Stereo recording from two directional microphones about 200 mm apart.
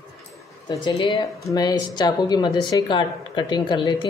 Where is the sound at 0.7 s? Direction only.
25° left (ahead or behind).